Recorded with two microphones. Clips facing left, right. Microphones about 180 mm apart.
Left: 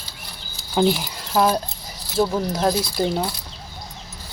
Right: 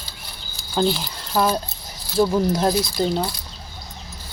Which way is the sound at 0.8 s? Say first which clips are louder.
Left 2 dB; 15° left (ahead or behind).